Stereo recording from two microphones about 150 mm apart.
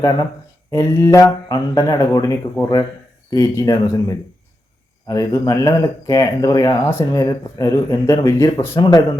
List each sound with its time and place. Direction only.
0.7 s speech: 20° left (ahead or behind)